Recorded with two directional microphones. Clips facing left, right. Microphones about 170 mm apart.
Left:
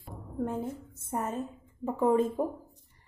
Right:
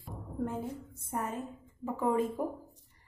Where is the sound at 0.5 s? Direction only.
20° left (ahead or behind).